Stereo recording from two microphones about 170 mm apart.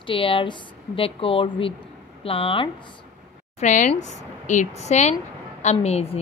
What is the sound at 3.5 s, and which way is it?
A woman's voice, 45° left (ahead or behind).